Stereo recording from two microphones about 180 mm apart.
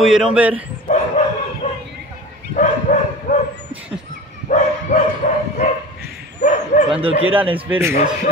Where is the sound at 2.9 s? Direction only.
40° left (ahead or behind).